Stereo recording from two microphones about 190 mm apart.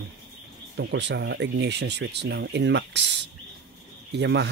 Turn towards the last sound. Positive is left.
turn(degrees=-65)  # may be behind; listen again after turning